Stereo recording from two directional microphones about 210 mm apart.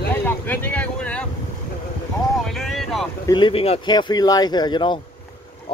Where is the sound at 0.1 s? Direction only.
10° left (ahead or behind).